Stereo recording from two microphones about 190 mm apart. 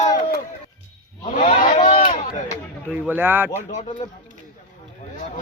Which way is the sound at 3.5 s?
40° left (ahead or behind).